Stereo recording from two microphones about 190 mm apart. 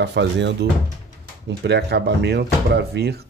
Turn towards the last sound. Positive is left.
turn(degrees=-60)  # may be behind; listen again after turning